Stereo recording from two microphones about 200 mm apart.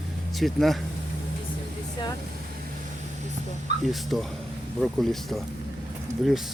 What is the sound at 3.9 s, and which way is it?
Speech, centre (ahead or behind).